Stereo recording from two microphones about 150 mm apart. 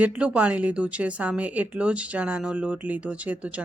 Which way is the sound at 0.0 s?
10° right (ahead or behind).